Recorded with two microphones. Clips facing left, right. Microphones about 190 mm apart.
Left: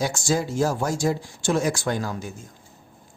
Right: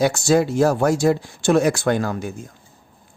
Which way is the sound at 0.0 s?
65° right (ahead or behind).